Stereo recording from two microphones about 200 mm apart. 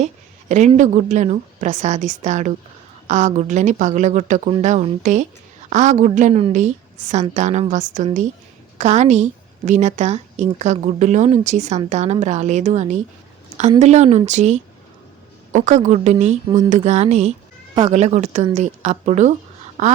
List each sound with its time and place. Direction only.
0.0 s a woman's voice: 35° right (ahead or behind)